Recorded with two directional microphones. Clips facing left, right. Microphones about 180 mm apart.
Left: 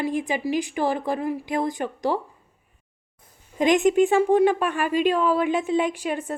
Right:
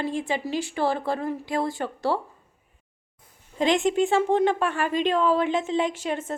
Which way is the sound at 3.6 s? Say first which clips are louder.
Left 4 dB; 15° left (ahead or behind).